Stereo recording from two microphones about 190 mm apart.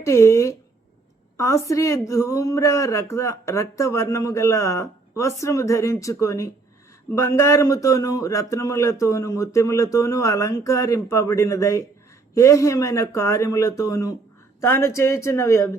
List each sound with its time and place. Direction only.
0.0 s speech: 15° left (ahead or behind)